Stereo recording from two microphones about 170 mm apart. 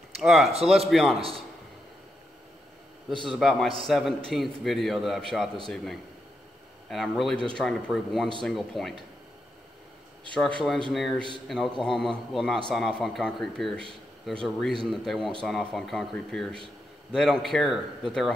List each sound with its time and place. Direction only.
0.2 s a man's voice: centre (ahead or behind)
3.3 s a man's voice: centre (ahead or behind)
6.9 s a man's voice: centre (ahead or behind)
10.3 s a man's voice: 5° left (ahead or behind)